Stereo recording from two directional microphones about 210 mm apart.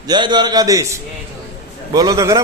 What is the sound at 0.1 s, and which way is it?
A man's voice, 20° right (ahead or behind).